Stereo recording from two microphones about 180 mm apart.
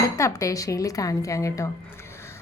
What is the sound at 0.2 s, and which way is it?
A woman's voice, 15° left (ahead or behind).